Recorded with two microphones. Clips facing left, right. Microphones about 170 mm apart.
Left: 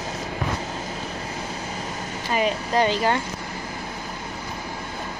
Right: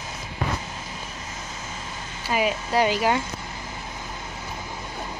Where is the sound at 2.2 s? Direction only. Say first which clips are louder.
Left 1 dB; 5° right (ahead or behind).